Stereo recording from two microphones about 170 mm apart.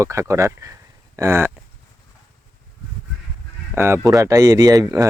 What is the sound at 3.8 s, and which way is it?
Speech, 15° right (ahead or behind).